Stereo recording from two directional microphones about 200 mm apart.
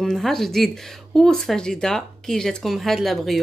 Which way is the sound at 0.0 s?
Centre (ahead or behind).